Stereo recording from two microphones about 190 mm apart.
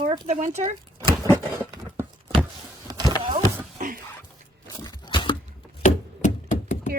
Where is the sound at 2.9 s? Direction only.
20° right (ahead or behind).